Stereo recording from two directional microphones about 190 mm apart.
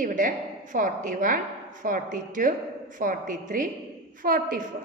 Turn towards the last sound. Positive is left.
turn(degrees=-45)  # may be behind; listen again after turning